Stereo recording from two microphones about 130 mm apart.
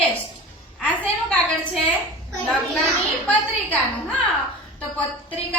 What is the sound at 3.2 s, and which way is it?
Speech, 10° left (ahead or behind).